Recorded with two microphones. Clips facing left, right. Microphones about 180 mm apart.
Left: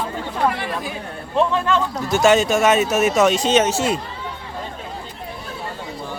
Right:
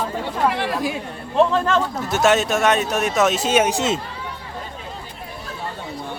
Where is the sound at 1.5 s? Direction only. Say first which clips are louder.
Right 1 dB; 40° right (ahead or behind).